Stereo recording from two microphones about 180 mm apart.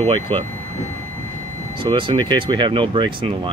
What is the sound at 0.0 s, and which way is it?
Speech, 30° right (ahead or behind).